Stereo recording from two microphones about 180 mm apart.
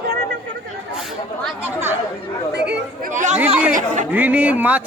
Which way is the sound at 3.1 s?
45° right (ahead or behind).